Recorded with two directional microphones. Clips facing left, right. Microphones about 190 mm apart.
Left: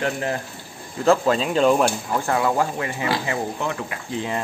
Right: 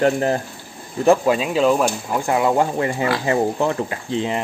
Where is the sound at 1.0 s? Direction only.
15° right (ahead or behind).